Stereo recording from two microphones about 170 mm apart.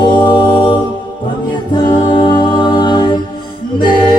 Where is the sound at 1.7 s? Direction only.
25° left (ahead or behind).